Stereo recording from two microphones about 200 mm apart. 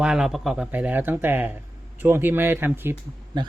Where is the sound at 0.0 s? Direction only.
5° right (ahead or behind).